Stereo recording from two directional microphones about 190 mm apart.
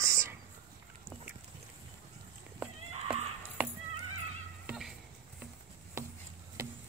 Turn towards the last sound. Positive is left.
turn(degrees=-15)  # may be behind; listen again after turning